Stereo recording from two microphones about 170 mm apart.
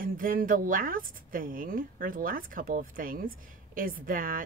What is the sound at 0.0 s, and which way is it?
Speech, 55° right (ahead or behind).